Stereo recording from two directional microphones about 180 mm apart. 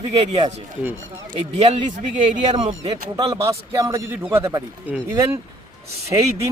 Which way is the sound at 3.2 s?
20° right (ahead or behind).